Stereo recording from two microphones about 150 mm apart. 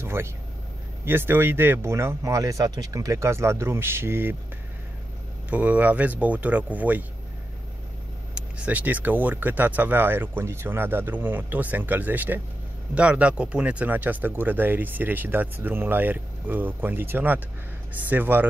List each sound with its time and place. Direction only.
0.0 s vehicle: 15° right (ahead or behind)
1.0 s speech: 15° right (ahead or behind)
5.5 s speech: 10° right (ahead or behind)
8.4 s speech: 10° right (ahead or behind)